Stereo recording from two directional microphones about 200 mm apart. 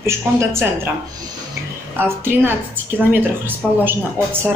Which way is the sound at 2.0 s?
10° right (ahead or behind).